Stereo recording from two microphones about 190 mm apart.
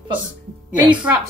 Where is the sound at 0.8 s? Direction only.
10° right (ahead or behind).